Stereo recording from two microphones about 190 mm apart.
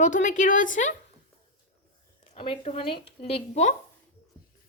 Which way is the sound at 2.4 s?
30° left (ahead or behind).